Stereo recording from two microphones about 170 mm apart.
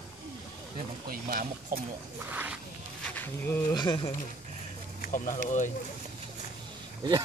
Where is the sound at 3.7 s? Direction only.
25° left (ahead or behind).